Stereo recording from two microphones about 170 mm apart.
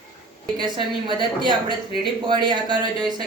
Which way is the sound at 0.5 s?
25° right (ahead or behind).